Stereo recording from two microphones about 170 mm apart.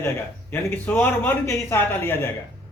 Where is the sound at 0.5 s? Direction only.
10° left (ahead or behind).